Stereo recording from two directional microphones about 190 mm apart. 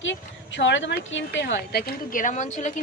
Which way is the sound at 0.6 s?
75° left (ahead or behind).